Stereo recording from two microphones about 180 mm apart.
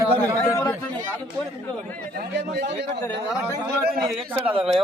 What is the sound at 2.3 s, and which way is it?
Speech, 65° right (ahead or behind).